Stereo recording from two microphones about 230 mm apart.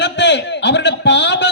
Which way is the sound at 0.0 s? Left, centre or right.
Left.